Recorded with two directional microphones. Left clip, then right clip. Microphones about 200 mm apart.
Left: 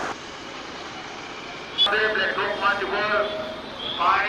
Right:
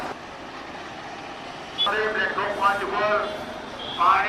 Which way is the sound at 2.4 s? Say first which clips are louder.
Even; 55° right (ahead or behind).